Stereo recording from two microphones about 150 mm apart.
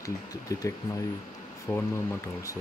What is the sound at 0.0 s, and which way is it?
Speech, 25° left (ahead or behind).